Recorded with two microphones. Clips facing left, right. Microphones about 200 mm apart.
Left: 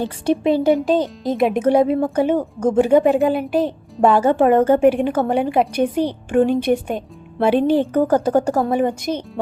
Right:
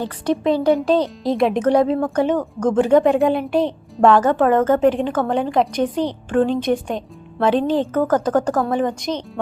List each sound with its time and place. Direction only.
0.3 s speech: 10° left (ahead or behind)